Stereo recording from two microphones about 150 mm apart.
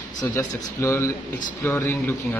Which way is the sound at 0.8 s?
15° left (ahead or behind).